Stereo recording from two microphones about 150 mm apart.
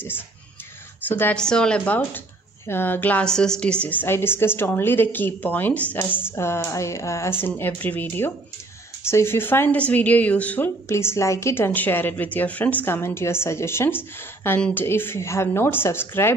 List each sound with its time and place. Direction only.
1.0 s a woman's voice: 15° left (ahead or behind)